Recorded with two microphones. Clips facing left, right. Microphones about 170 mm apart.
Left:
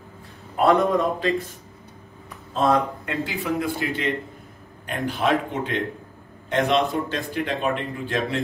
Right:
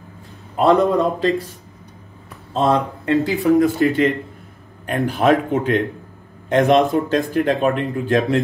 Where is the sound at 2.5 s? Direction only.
30° right (ahead or behind).